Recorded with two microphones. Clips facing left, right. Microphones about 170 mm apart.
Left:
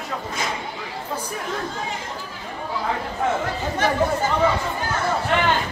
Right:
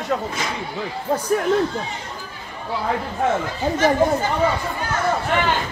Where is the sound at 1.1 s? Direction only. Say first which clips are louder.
Right 8 dB; 50° right (ahead or behind).